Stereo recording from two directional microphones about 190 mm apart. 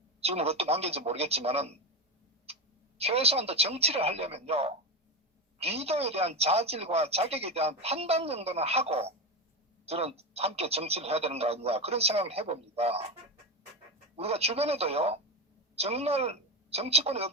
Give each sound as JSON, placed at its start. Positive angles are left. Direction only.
{"t": 0.2, "sound": "speech", "side_deg": -35}
{"t": 3.0, "sound": "speech", "side_deg": -30}
{"t": 14.2, "sound": "a woman's voice", "side_deg": -30}